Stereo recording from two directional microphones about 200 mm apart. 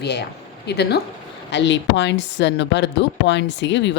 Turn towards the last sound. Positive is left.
turn(degrees=60)  # may be behind; listen again after turning